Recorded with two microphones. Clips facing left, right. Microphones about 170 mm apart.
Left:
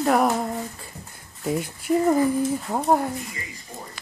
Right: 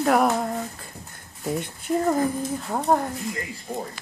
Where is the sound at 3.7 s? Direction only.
55° right (ahead or behind).